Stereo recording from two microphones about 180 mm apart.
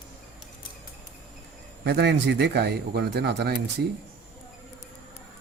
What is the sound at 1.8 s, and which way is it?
A man's voice, 65° right (ahead or behind).